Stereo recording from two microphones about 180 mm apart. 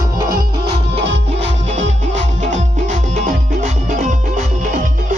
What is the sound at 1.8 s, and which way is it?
Music, 40° right (ahead or behind).